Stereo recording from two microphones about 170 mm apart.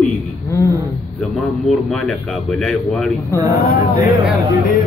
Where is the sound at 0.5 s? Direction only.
20° left (ahead or behind).